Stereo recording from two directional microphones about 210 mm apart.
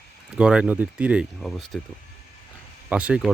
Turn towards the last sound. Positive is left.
turn(degrees=-5)  # may be behind; listen again after turning